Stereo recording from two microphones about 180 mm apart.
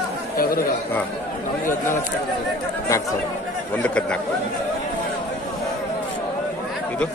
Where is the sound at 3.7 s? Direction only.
5° left (ahead or behind).